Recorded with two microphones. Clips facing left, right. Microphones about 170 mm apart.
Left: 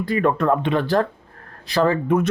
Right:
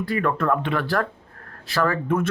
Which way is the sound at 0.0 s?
20° left (ahead or behind).